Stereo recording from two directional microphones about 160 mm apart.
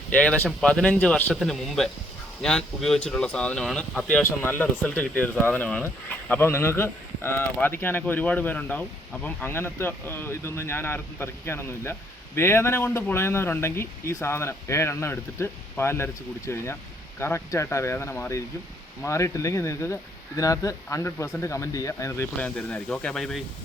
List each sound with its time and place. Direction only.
0.1 s speech: 10° left (ahead or behind)
22.4 s speech: 5° left (ahead or behind)